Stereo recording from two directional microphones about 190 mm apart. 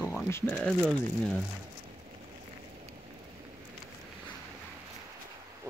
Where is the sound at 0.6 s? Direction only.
Centre (ahead or behind).